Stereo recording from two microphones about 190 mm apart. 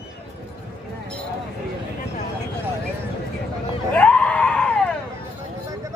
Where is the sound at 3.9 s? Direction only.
5° left (ahead or behind).